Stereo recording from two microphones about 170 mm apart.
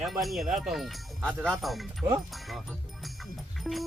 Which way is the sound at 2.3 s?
Centre (ahead or behind).